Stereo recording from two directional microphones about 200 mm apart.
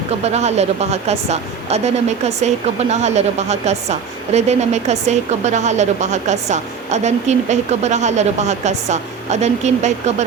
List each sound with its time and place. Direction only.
0.3 s speech: 35° right (ahead or behind)